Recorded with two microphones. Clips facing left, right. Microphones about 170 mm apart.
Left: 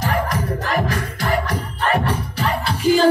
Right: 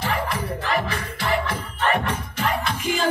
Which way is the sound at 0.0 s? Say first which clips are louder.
Left 4 dB; 40° left (ahead or behind).